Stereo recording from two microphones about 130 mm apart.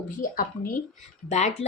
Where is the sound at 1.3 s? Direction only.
60° left (ahead or behind).